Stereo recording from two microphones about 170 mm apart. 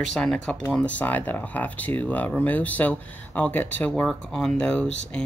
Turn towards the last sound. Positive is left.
turn(degrees=5)  # may be behind; listen again after turning